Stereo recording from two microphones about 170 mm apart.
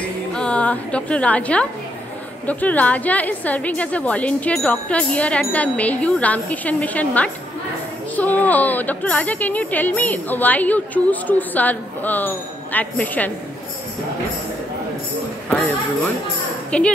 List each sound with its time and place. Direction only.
0.3 s a woman's voice: 5° left (ahead or behind)
15.5 s speech: 10° left (ahead or behind)